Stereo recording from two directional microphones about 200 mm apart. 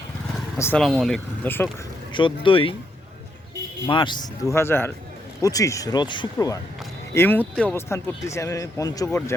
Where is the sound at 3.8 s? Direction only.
25° left (ahead or behind).